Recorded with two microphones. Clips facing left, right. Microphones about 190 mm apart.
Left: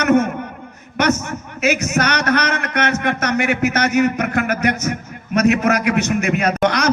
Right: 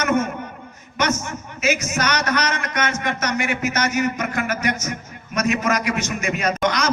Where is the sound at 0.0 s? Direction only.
60° left (ahead or behind).